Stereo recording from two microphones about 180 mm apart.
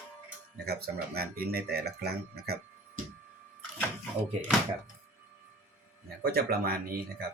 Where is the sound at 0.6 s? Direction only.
60° right (ahead or behind).